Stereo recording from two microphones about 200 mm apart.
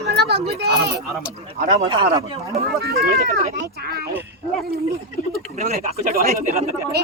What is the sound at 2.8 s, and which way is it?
Speech, 50° right (ahead or behind).